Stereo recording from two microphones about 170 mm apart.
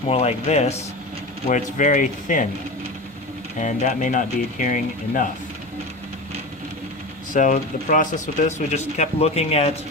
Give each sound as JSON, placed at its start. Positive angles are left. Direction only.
{"t": 0.1, "sound": "speech", "side_deg": 40}
{"t": 3.6, "sound": "speech", "side_deg": 45}
{"t": 7.3, "sound": "speech", "side_deg": 50}